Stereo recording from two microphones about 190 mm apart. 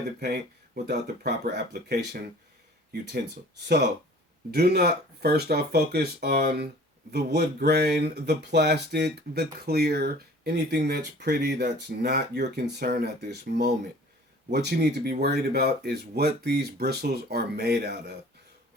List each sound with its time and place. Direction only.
0.2 s speech: 60° right (ahead or behind)
4.5 s speech: 55° right (ahead or behind)